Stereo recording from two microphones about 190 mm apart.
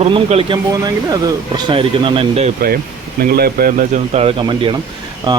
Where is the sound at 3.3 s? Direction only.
55° right (ahead or behind).